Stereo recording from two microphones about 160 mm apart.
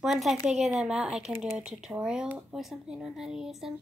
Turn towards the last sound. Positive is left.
turn(degrees=-5)  # may be behind; listen again after turning